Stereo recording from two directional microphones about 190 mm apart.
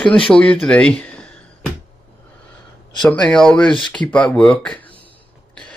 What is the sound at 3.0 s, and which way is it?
Speech, 5° left (ahead or behind).